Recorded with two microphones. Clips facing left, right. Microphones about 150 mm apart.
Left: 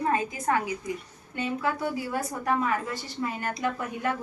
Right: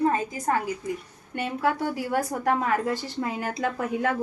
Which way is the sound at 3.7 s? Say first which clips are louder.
Right 5 dB; 90° right.